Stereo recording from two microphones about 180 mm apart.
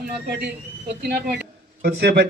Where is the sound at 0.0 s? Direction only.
60° right (ahead or behind).